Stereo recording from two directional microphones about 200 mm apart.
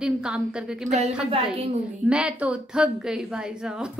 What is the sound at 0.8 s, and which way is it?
Speech, 35° right (ahead or behind).